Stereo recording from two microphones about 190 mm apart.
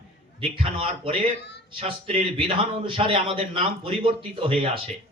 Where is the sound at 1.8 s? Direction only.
30° right (ahead or behind).